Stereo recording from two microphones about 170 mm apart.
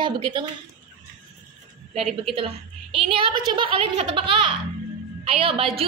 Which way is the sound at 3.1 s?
30° right (ahead or behind).